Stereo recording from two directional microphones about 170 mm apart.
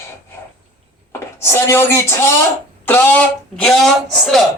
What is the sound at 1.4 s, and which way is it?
Speech, 15° left (ahead or behind).